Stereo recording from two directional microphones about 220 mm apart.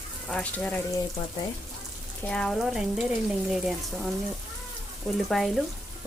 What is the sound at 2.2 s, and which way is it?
Speech, 5° left (ahead or behind).